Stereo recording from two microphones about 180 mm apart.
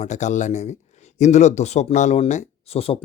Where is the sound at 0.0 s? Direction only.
40° left (ahead or behind).